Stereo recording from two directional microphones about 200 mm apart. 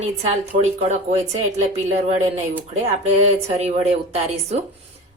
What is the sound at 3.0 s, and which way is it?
Speech, 30° right (ahead or behind).